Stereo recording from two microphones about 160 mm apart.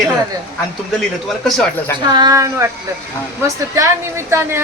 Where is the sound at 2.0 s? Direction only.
25° right (ahead or behind).